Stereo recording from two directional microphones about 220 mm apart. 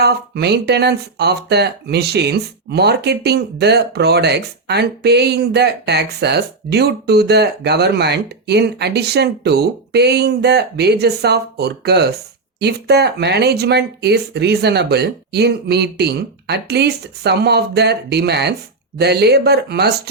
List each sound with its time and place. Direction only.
0.0 s speech: 50° right (ahead or behind)